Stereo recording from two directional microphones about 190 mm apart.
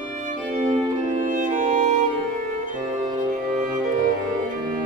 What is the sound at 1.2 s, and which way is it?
Music, 45° right (ahead or behind).